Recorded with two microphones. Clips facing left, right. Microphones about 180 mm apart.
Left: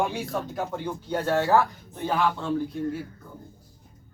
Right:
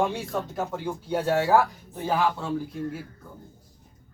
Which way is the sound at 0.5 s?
5° right (ahead or behind).